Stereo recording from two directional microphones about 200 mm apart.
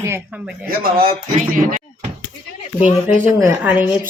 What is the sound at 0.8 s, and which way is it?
Speech, 45° right (ahead or behind).